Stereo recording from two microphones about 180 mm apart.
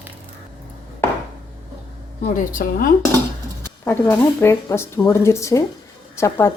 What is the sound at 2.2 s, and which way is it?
Speech, 50° left (ahead or behind).